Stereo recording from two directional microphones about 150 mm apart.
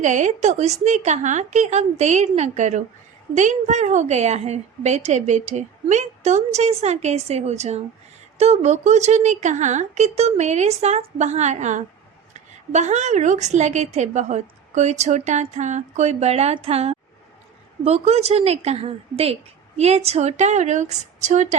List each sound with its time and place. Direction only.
0.0 s a woman's voice: 55° right (ahead or behind)